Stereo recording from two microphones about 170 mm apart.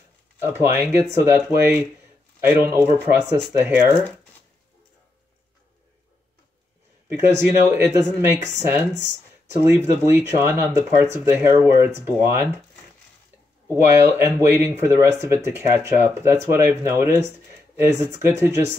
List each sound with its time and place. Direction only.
0.4 s speech: 10° right (ahead or behind)
7.1 s speech: 15° right (ahead or behind)
13.7 s speech: 10° right (ahead or behind)